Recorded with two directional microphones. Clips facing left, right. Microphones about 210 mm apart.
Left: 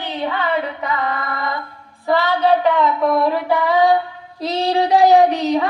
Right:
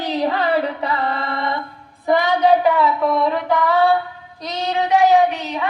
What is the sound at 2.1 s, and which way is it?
Female singing, 15° right (ahead or behind).